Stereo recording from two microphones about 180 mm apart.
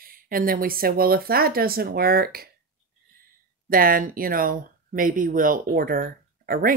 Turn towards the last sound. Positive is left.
turn(degrees=-55)  # may be behind; listen again after turning